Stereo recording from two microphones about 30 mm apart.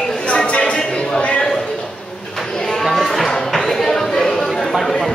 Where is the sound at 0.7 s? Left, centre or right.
Left.